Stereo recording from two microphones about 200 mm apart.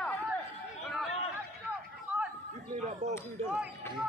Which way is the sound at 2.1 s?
10° right (ahead or behind).